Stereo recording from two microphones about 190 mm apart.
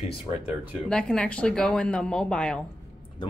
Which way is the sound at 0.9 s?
5° left (ahead or behind).